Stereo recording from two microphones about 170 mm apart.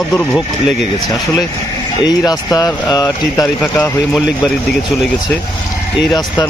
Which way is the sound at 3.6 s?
5° left (ahead or behind).